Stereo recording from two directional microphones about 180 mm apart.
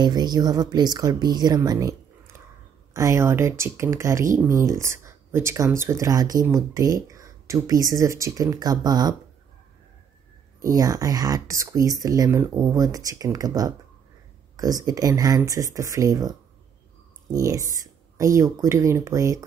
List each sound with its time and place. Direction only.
0.0 s speech: 25° right (ahead or behind)
10.6 s speech: 20° right (ahead or behind)